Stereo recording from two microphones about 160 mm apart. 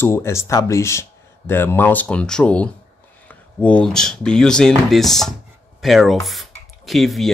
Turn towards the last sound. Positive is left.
turn(degrees=0)  # may be behind; listen again after turning